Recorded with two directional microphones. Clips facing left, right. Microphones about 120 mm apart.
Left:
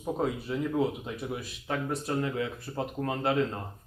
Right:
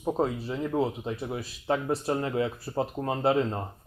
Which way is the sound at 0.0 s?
25° right (ahead or behind).